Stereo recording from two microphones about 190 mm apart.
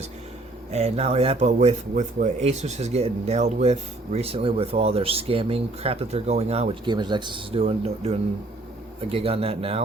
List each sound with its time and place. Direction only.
0.7 s speech: 35° right (ahead or behind)